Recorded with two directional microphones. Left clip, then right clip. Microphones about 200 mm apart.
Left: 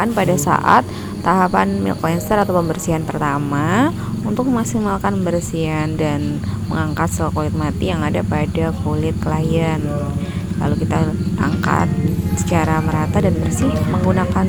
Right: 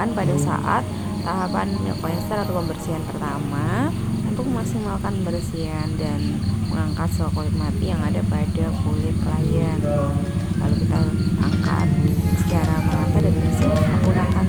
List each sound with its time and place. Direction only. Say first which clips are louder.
0.0 s speech: left 6 dB; 40° left (ahead or behind)
6.7 s speech: left 10 dB; 40° left (ahead or behind)